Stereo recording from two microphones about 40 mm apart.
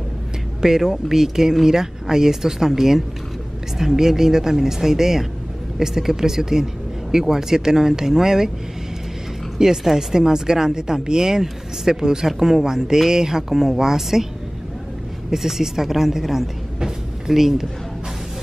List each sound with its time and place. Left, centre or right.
0.6 s speech: centre
9.6 s speech: centre
15.3 s speech: centre